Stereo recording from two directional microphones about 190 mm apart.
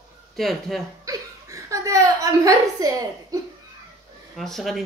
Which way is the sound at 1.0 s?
15° right (ahead or behind).